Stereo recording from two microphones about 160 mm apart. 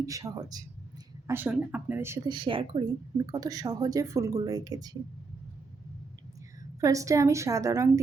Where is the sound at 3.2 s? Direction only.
25° right (ahead or behind).